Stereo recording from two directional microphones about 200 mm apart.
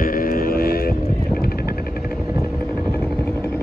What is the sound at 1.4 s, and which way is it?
Vehicle, 50° left (ahead or behind).